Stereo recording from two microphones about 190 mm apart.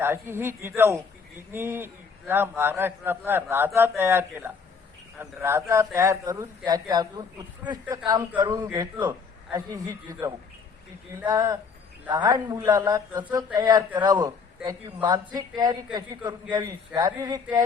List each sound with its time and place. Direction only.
0.0 s a man's voice: 10° right (ahead or behind)
8.6 s a man's voice: 15° right (ahead or behind)